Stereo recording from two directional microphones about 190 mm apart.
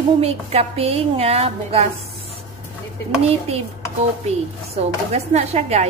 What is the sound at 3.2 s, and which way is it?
Speech, 30° right (ahead or behind).